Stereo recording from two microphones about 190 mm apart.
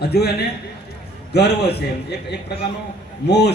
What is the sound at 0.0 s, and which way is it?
A man's voice, 60° left (ahead or behind).